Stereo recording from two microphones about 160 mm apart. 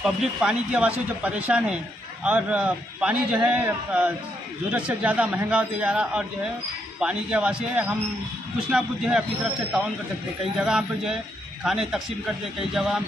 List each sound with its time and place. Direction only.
0.0 s a man's voice: 5° right (ahead or behind)